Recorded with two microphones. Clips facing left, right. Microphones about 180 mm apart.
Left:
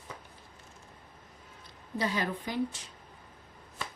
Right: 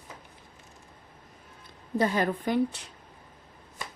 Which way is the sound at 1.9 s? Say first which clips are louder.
Right 6 dB; 50° right (ahead or behind).